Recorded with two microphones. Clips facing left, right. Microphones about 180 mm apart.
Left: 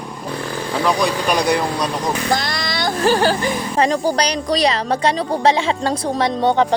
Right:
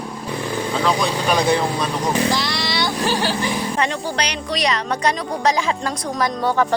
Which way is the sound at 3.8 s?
35° left (ahead or behind).